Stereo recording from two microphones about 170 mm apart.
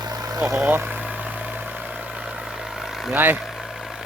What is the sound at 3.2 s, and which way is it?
Speech, 10° right (ahead or behind).